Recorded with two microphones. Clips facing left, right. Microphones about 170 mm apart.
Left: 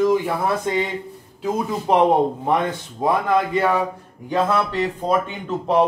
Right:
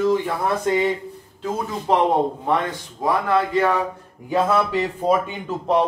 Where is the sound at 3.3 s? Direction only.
10° left (ahead or behind).